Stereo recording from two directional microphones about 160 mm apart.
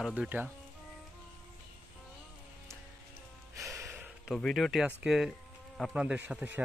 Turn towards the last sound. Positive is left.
turn(degrees=-10)  # may be behind; listen again after turning